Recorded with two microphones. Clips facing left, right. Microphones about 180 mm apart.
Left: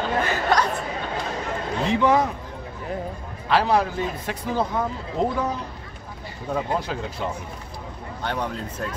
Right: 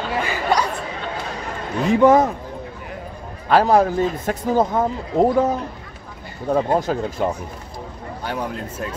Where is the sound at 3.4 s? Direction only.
45° right (ahead or behind).